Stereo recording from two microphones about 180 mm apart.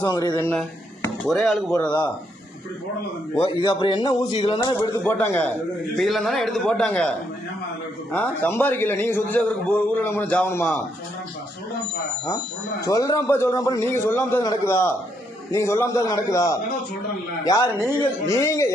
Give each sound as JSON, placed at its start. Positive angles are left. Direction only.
{"t": 0.0, "sound": "a man's voice", "side_deg": 20}
{"t": 1.2, "sound": "a man's voice", "side_deg": 0}
{"t": 3.3, "sound": "a man's voice", "side_deg": 30}
{"t": 5.0, "sound": "a man's voice", "side_deg": 10}
{"t": 8.1, "sound": "a man's voice", "side_deg": 10}
{"t": 12.8, "sound": "a man's voice", "side_deg": 20}
{"t": 17.7, "sound": "a man's voice", "side_deg": -15}
{"t": 18.3, "sound": "a man's voice", "side_deg": 15}